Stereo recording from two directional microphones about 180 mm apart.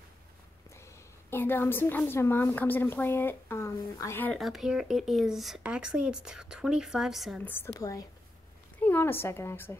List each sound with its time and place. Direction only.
1.3 s a woman's voice: 10° left (ahead or behind)
4.4 s speech: centre (ahead or behind)
7.4 s a woman's voice: 10° left (ahead or behind)